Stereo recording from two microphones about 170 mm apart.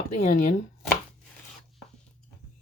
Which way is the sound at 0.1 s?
45° left (ahead or behind).